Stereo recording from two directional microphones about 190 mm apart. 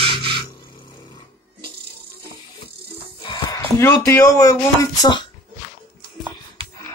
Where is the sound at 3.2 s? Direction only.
20° left (ahead or behind).